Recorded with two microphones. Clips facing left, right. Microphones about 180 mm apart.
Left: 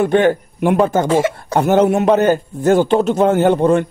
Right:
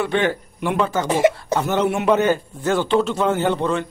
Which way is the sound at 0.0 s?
45° left (ahead or behind).